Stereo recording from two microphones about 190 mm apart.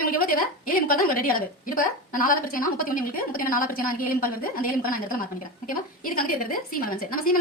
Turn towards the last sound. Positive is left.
turn(degrees=50)  # may be behind; listen again after turning